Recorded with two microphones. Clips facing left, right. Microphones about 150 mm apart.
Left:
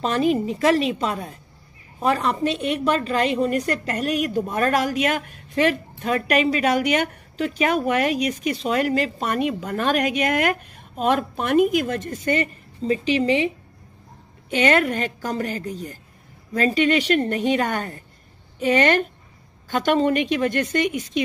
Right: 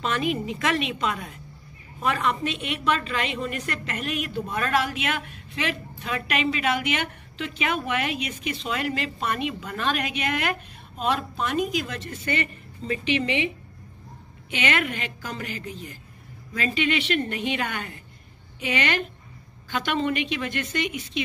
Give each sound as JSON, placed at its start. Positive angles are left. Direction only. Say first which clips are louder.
{"t": 0.0, "sound": "a woman's voice", "louder": "left 6 dB", "side_deg": 35}
{"t": 14.5, "sound": "a woman's voice", "louder": "left 8 dB", "side_deg": 40}